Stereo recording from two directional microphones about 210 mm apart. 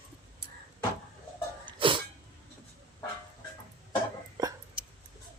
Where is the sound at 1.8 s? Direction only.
25° right (ahead or behind).